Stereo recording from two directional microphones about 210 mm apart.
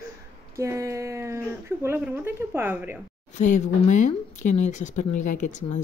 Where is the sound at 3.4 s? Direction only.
35° left (ahead or behind).